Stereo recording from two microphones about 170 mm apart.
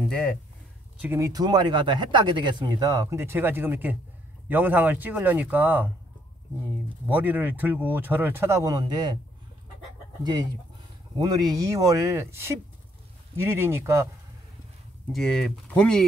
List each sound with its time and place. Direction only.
0.0 s speech: 5° left (ahead or behind)
1.0 s speech: 15° right (ahead or behind)
7.1 s speech: 10° right (ahead or behind); by 9.2 s 25° right (ahead or behind)
11.1 s speech: 25° right (ahead or behind)
15.1 s speech: 5° left (ahead or behind)